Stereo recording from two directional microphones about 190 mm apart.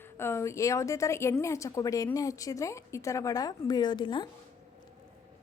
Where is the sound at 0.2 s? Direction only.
15° left (ahead or behind).